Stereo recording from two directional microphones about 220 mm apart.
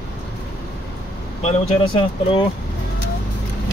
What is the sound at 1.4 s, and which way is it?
Speech, 25° left (ahead or behind).